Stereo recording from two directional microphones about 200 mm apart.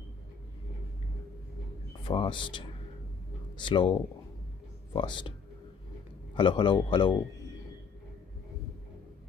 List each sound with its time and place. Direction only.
2.0 s speech: 25° left (ahead or behind)
6.3 s speech: 25° left (ahead or behind)